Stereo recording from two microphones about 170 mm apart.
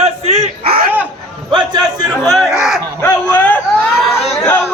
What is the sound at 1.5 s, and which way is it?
Speech, 25° right (ahead or behind).